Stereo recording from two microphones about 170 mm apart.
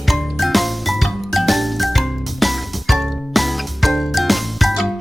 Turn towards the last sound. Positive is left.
turn(degrees=0)  # may be behind; listen again after turning